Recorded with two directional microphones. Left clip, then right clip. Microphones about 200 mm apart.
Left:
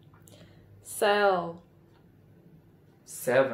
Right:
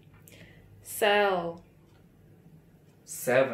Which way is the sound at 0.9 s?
15° left (ahead or behind).